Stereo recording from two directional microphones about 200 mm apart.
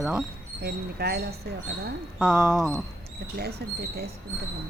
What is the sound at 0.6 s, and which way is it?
Speech, 55° right (ahead or behind).